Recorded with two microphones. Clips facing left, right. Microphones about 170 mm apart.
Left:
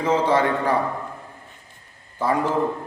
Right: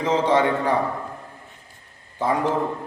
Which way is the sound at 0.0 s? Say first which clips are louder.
Even; 20° right (ahead or behind).